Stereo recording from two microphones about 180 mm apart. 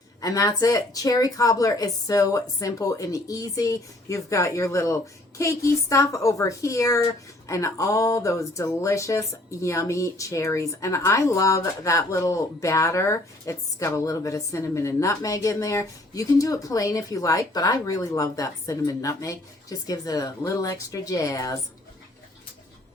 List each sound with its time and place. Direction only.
0.2 s speech: 20° left (ahead or behind)
5.4 s a sound: 15° left (ahead or behind)
19.9 s speech: 20° left (ahead or behind)